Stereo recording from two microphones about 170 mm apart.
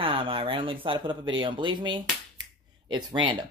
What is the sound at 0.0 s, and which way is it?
Speech, 30° right (ahead or behind).